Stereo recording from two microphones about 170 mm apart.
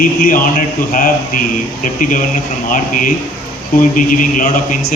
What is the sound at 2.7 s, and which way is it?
A man's voice, 50° left (ahead or behind).